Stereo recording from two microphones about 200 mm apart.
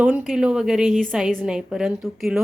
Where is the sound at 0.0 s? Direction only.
5° right (ahead or behind).